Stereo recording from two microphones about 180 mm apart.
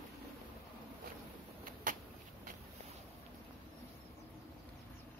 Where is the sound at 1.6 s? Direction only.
50° right (ahead or behind).